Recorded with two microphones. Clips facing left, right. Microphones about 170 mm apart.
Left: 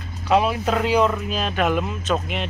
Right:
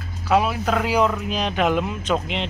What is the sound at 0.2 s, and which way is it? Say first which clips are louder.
Speech: left 1 dB; 5° right (ahead or behind).